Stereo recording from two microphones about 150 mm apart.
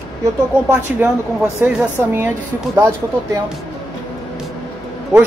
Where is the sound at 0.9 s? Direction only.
10° right (ahead or behind).